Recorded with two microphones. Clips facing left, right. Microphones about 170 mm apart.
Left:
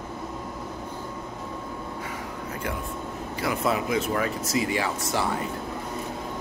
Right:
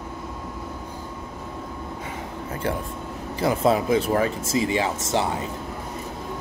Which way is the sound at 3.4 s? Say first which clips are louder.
Right 6 dB; 30° right (ahead or behind).